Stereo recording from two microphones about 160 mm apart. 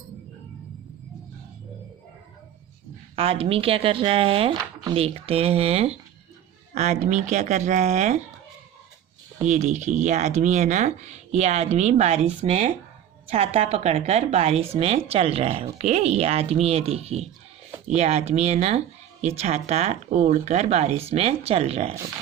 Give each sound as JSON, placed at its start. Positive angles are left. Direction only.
{"t": 3.2, "sound": "speech", "side_deg": -35}
{"t": 9.4, "sound": "speech", "side_deg": -50}